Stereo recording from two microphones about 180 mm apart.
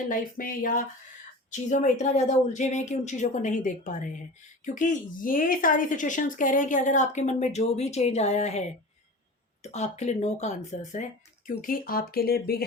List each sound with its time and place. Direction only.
0.1 s speech: 50° left (ahead or behind)
9.7 s speech: 35° left (ahead or behind)
11.6 s speech: 55° left (ahead or behind)